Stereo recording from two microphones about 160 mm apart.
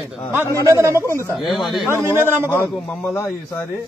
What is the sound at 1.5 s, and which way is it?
Speech, centre (ahead or behind).